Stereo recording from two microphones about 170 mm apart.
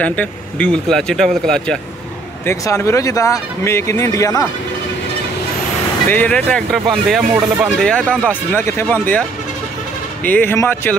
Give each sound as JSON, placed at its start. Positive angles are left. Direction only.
{"t": 0.0, "sound": "speech", "side_deg": 10}
{"t": 2.4, "sound": "speech", "side_deg": 15}
{"t": 6.0, "sound": "speech", "side_deg": 10}
{"t": 7.3, "sound": "speech", "side_deg": -10}
{"t": 7.8, "sound": "speech", "side_deg": 5}
{"t": 10.2, "sound": "speech", "side_deg": 10}